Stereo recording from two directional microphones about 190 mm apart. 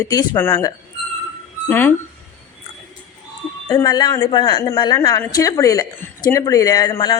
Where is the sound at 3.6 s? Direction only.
20° left (ahead or behind).